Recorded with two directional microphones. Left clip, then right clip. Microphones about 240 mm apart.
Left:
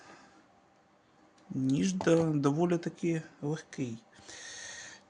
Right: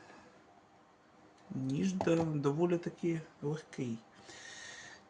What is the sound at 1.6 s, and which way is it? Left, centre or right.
Speech, left.